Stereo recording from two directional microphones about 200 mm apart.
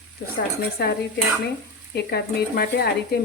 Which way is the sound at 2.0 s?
55° left (ahead or behind).